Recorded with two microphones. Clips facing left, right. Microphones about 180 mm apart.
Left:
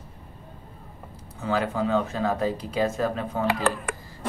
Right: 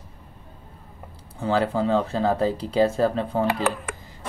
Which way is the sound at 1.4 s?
30° right (ahead or behind).